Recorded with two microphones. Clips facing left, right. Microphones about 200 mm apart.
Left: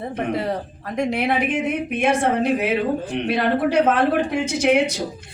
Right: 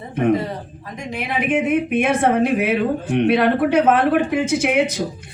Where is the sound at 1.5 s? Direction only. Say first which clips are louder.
Right 4 dB; 60° right (ahead or behind).